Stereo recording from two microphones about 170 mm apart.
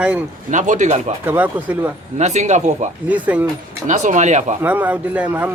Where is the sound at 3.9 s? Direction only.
45° right (ahead or behind).